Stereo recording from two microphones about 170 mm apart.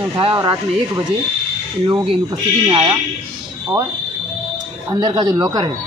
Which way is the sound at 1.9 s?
30° right (ahead or behind).